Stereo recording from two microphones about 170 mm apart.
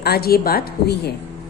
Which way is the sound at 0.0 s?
65° left (ahead or behind).